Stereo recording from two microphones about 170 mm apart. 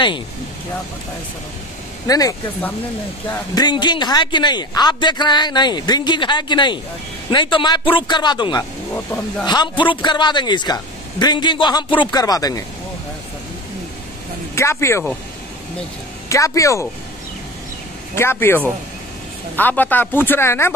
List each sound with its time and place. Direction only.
2.0 s a man's voice: 20° left (ahead or behind)
14.5 s speech: 15° left (ahead or behind)
16.3 s a man's voice: 20° left (ahead or behind)
18.1 s speech: 15° left (ahead or behind)